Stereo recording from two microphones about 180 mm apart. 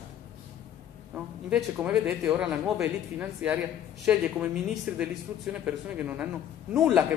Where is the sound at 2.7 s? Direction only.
15° right (ahead or behind).